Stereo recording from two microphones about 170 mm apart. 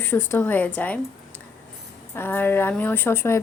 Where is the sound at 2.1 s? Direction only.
10° left (ahead or behind).